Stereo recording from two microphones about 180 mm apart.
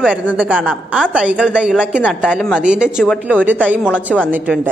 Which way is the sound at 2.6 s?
5° right (ahead or behind).